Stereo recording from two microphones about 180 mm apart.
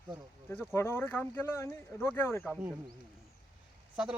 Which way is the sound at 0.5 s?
10° left (ahead or behind).